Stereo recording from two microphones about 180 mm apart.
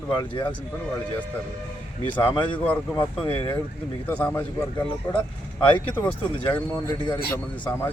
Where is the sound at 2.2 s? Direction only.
30° left (ahead or behind).